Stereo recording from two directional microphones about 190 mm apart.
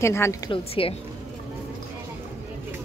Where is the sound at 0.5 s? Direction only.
30° left (ahead or behind).